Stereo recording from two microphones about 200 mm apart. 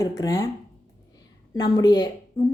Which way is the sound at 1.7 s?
20° left (ahead or behind).